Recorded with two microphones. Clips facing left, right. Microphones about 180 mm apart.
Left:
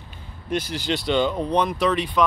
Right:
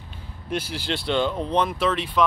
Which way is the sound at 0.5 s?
5° right (ahead or behind).